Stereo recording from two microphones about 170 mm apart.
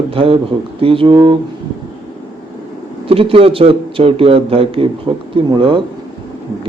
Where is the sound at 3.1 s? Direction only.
35° right (ahead or behind).